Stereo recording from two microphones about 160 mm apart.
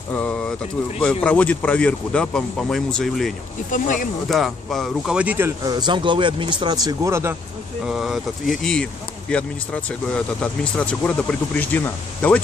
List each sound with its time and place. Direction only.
0.1 s speech: 5° left (ahead or behind)
3.7 s speech: 55° left (ahead or behind)
4.3 s speech: centre (ahead or behind)
5.6 s speech: 25° right (ahead or behind)
7.8 s speech: centre (ahead or behind)